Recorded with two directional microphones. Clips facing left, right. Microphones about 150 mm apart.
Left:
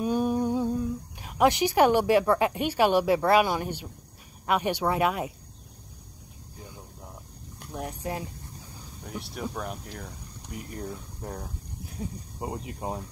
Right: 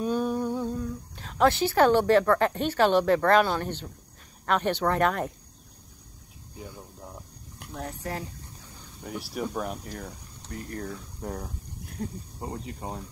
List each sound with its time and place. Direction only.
0.0 s speech: 15° left (ahead or behind)
7.7 s speech: 15° left (ahead or behind)
9.0 s speech: centre (ahead or behind)
10.5 s speech: 10° left (ahead or behind)
11.2 s a sound: centre (ahead or behind)
12.4 s speech: 15° left (ahead or behind)